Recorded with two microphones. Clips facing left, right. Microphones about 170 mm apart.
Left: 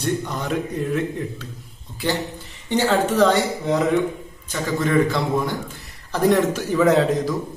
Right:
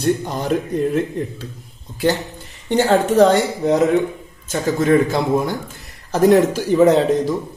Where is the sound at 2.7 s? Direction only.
45° right (ahead or behind).